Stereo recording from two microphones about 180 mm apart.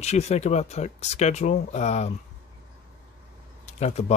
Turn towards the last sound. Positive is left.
turn(degrees=35)  # may be behind; listen again after turning